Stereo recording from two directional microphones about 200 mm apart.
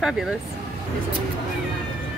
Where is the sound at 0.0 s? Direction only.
5° right (ahead or behind).